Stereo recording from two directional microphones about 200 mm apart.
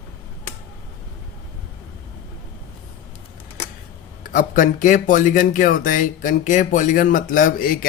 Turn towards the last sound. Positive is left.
turn(degrees=45)  # may be behind; listen again after turning